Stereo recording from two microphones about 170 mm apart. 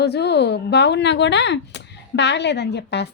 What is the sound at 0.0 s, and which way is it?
Speech, 80° left.